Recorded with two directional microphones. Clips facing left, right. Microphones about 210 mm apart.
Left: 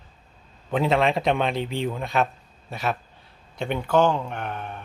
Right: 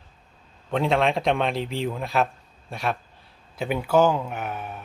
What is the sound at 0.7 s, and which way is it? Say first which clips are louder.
Speech: left 1 dB; centre (ahead or behind).